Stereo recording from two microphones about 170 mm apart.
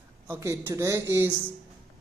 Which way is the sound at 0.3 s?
15° right (ahead or behind).